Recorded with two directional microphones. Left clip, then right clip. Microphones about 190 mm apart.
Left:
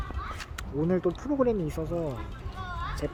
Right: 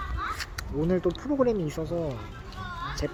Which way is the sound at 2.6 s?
40° left (ahead or behind).